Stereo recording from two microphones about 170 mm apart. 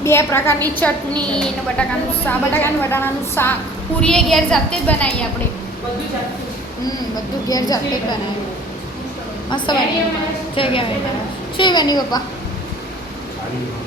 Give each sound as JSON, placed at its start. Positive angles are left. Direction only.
{"t": 0.0, "sound": "a woman's voice", "side_deg": 15}
{"t": 4.0, "sound": "a woman's voice", "side_deg": 5}
{"t": 7.4, "sound": "a child's voice", "side_deg": 20}
{"t": 9.5, "sound": "a child's voice", "side_deg": 25}